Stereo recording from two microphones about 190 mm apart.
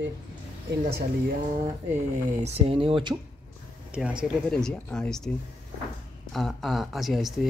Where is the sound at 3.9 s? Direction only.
5° right (ahead or behind).